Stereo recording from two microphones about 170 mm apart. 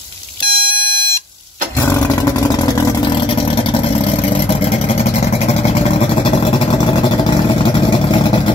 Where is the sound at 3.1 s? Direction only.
30° left (ahead or behind).